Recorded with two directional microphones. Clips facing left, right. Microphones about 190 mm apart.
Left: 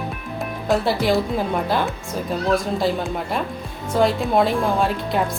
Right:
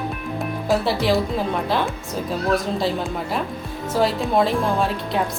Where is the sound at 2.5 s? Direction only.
Centre (ahead or behind).